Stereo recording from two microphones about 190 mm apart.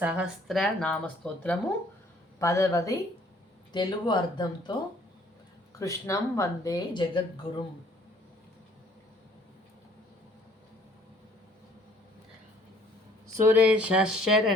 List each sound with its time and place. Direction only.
0.0 s a woman's voice: 5° right (ahead or behind); by 4.7 s 25° left (ahead or behind)
5.8 s speech: 15° left (ahead or behind)
13.2 s speech: 15° right (ahead or behind)